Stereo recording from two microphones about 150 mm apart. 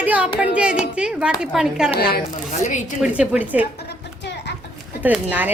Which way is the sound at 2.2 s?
55° left (ahead or behind).